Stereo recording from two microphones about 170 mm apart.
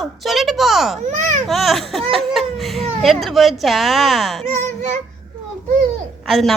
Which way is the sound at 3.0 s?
Centre (ahead or behind).